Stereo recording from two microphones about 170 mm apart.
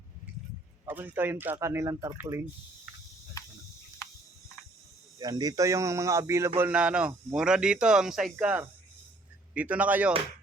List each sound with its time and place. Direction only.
0.9 s speech: 10° right (ahead or behind)
5.2 s speech: 20° right (ahead or behind)